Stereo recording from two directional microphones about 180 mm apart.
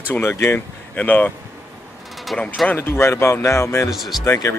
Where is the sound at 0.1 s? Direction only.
15° left (ahead or behind).